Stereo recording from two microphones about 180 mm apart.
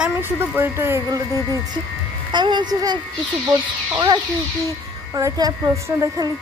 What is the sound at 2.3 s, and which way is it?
Speech, 25° right (ahead or behind).